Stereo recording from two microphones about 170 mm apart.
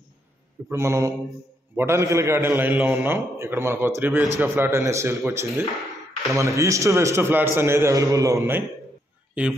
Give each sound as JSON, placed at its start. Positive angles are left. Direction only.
{"t": 0.7, "sound": "a man's voice", "side_deg": -15}